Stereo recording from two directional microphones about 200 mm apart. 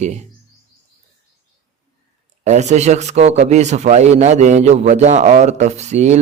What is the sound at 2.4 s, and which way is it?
Speech, 35° right (ahead or behind).